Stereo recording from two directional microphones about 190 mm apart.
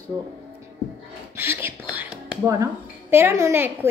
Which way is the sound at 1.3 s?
10° right (ahead or behind).